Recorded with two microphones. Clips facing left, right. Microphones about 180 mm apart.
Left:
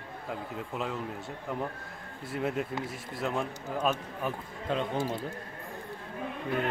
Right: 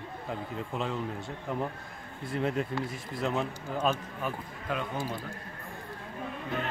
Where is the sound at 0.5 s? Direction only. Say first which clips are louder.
Right 2 dB; 5° left (ahead or behind).